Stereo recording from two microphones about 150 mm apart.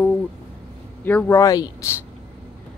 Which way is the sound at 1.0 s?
15° left (ahead or behind).